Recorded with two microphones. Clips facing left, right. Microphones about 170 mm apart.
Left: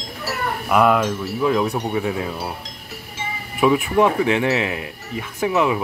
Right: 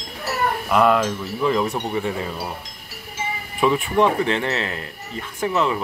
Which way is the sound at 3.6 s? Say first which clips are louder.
Left 2 dB; 10° left (ahead or behind).